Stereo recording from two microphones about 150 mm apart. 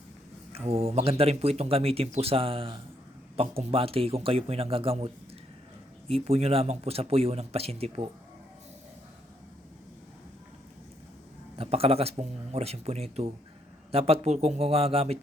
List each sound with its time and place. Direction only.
0.5 s speech: 40° right (ahead or behind)
11.5 s speech: 40° right (ahead or behind)